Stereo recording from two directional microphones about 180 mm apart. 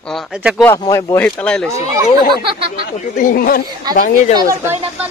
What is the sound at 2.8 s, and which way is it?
Speech, 50° left (ahead or behind).